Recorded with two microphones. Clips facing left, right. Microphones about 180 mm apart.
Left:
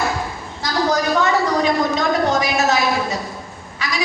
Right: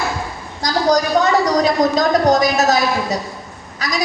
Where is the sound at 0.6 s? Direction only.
40° right (ahead or behind).